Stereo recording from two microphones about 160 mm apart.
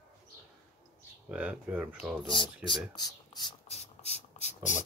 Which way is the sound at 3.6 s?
40° left (ahead or behind).